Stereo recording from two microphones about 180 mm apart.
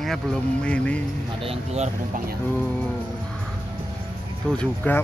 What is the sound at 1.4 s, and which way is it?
Speech, 35° right (ahead or behind).